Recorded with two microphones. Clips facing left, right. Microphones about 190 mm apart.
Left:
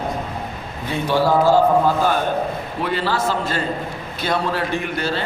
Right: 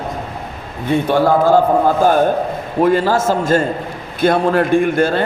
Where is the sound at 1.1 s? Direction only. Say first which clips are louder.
Right 2 dB; 55° right (ahead or behind).